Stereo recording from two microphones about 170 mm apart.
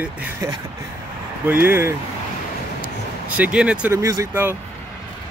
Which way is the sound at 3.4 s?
5° right (ahead or behind).